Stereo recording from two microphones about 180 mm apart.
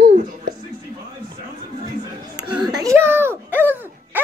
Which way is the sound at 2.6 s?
20° right (ahead or behind).